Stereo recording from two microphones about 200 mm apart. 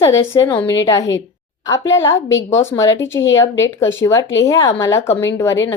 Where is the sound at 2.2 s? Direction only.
70° left (ahead or behind).